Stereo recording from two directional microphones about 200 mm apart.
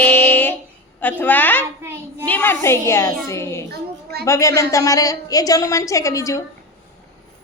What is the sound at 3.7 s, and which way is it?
Child singing, 50° right (ahead or behind).